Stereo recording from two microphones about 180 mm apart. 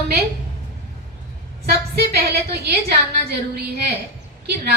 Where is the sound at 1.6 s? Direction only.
60° right (ahead or behind).